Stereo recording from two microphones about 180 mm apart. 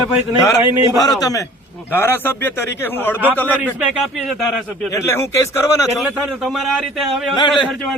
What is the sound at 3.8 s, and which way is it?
Speech, centre (ahead or behind).